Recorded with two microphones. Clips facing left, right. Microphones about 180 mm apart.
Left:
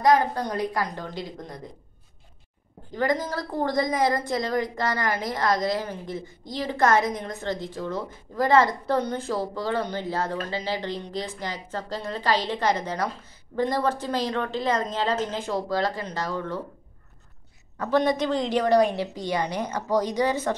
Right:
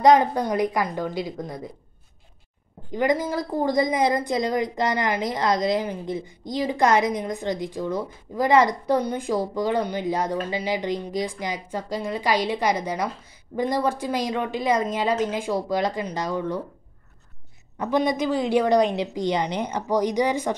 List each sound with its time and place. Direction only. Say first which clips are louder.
0.0 s a woman's voice: right 4 dB; 20° right (ahead or behind)
2.9 s a woman's voice: right 3 dB; 15° right (ahead or behind)
17.7 s a woman's voice: even; 10° right (ahead or behind)